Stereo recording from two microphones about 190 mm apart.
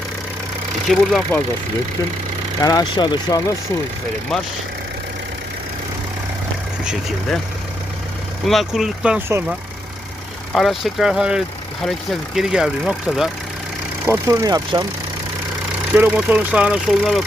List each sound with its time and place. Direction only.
0.9 s speech: centre (ahead or behind)
2.6 s speech: 20° left (ahead or behind)
8.4 s speech: centre (ahead or behind)
14.1 s speech: 20° right (ahead or behind)
16.0 s speech: 5° right (ahead or behind)